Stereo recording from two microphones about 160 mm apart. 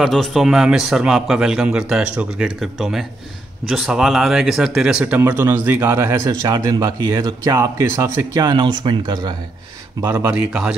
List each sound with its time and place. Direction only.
0.0 s a man's voice: centre (ahead or behind); by 9.3 s 25° right (ahead or behind)
9.9 s speech: 15° right (ahead or behind)